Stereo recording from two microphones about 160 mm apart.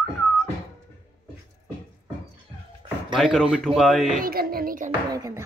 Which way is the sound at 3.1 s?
Centre (ahead or behind).